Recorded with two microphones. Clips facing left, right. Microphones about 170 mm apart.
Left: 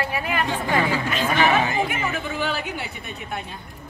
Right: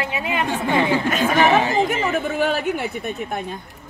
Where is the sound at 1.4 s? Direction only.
30° right (ahead or behind).